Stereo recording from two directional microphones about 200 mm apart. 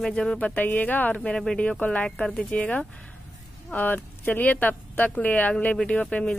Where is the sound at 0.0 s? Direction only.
5° left (ahead or behind).